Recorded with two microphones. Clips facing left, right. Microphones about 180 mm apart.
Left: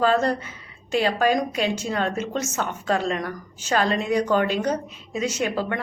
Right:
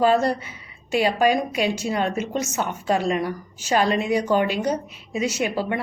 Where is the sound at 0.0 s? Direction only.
10° right (ahead or behind).